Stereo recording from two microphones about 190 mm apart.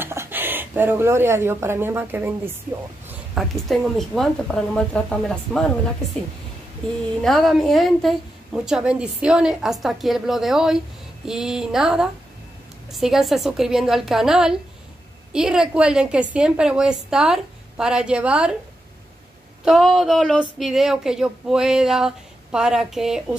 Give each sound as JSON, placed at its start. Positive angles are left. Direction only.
{"t": 0.0, "sound": "speech", "side_deg": -10}
{"t": 7.2, "sound": "speech", "side_deg": 0}
{"t": 19.6, "sound": "speech", "side_deg": 0}